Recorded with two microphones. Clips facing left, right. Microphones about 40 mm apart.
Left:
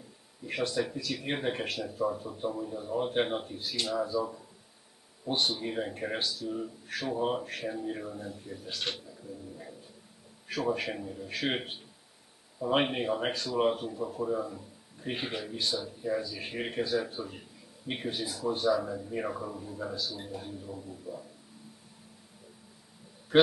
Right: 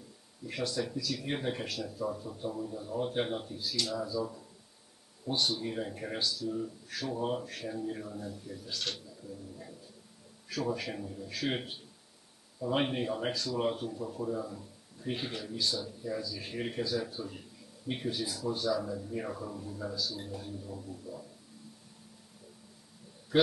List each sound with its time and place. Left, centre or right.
0.5 s speech: left
5.3 s a man's voice: left
18.2 s speech: centre
18.5 s speech: left; by 19.9 s centre
19.9 s speech: left
23.3 s mantra: left